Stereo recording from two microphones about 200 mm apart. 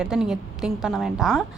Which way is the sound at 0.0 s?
5° right (ahead or behind).